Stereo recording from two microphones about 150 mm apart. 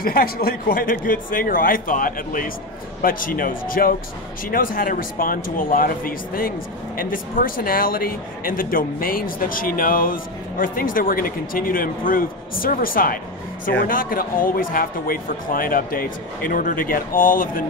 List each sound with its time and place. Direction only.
0.0 s speech: 85° left; by 17.6 s 70° left (ahead or behind)